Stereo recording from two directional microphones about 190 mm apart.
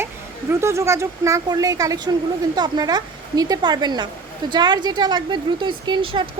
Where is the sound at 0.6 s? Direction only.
15° right (ahead or behind).